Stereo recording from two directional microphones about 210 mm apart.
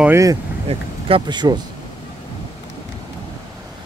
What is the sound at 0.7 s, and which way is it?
Speech, 25° right (ahead or behind).